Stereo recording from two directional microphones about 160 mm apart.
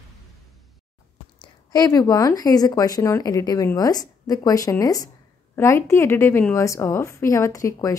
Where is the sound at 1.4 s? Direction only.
25° left (ahead or behind).